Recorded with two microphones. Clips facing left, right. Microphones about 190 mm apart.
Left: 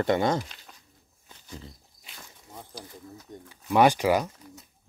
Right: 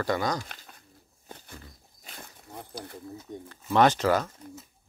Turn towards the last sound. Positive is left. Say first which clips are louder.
# left 1 dB
turn(degrees=15)  # may be behind; listen again after turning